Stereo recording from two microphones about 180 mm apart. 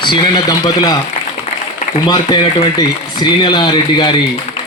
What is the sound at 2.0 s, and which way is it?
Speech, 25° left (ahead or behind).